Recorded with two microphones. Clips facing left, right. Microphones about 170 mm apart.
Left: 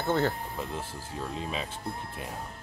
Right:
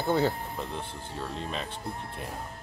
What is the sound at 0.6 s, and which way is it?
Speech, centre (ahead or behind).